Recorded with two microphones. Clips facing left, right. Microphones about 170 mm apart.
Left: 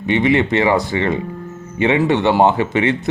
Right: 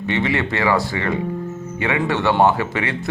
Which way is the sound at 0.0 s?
20° left (ahead or behind).